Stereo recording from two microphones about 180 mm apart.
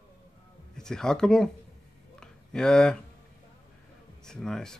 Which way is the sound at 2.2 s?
5° left (ahead or behind).